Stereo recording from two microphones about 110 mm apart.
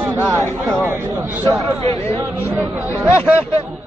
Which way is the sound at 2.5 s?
15° right (ahead or behind).